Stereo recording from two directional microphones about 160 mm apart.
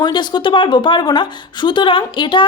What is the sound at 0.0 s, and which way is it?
A woman's voice, 30° left (ahead or behind).